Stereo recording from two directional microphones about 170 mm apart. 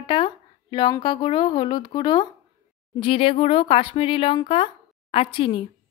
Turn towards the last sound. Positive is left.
turn(degrees=30)  # may be behind; listen again after turning